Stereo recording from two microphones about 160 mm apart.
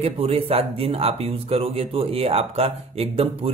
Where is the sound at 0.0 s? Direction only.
40° right (ahead or behind).